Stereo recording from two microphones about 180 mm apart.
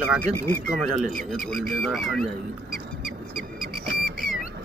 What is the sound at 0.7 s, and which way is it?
Speech, centre (ahead or behind).